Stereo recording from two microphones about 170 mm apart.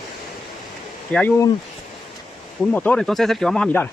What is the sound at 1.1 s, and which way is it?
Speech, 10° left (ahead or behind).